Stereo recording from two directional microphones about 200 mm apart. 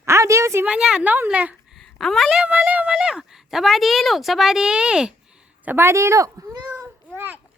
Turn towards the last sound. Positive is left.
turn(degrees=-15)  # may be behind; listen again after turning